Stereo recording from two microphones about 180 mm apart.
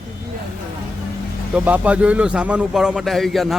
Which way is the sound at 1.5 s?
10° right (ahead or behind).